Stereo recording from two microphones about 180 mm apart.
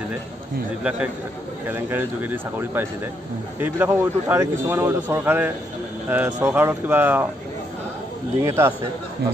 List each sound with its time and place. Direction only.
1.7 s a man's voice: 10° right (ahead or behind)
8.4 s a man's voice: 15° right (ahead or behind)